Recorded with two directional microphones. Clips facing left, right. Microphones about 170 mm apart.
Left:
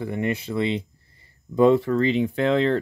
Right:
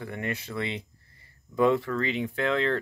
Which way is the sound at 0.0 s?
25° left (ahead or behind).